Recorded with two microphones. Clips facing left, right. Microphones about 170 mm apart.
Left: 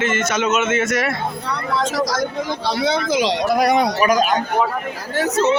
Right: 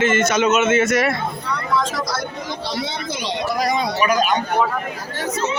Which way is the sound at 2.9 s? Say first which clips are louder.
Left 8 dB; 90° left.